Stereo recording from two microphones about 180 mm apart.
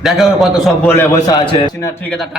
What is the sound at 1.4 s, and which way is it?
Speech, 30° left (ahead or behind).